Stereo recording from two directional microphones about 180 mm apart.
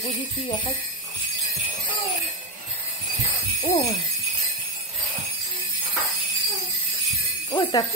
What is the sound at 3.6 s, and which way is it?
Speech, 35° left (ahead or behind).